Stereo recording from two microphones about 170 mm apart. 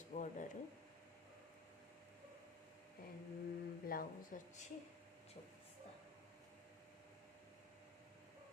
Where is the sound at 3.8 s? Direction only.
55° left (ahead or behind).